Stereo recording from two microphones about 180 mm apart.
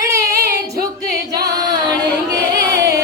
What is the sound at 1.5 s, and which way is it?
Carnatic music, 20° right (ahead or behind).